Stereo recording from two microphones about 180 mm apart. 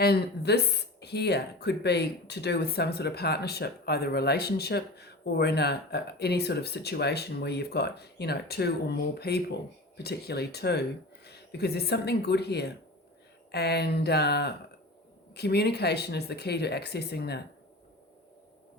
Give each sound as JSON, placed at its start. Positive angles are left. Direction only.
{"t": 0.0, "sound": "speech", "side_deg": 65}